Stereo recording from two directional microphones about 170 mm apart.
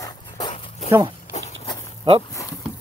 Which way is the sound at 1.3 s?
40° left (ahead or behind).